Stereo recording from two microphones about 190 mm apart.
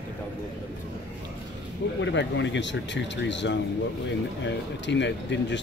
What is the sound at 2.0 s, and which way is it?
Speech, 70° left (ahead or behind).